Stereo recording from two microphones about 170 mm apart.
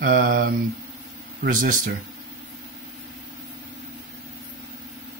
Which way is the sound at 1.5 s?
50° right (ahead or behind).